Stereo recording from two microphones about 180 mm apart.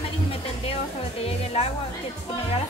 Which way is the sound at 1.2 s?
35° left (ahead or behind).